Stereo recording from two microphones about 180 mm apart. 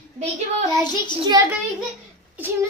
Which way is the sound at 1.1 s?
25° right (ahead or behind).